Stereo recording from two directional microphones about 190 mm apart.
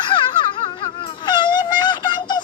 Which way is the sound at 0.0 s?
25° left (ahead or behind).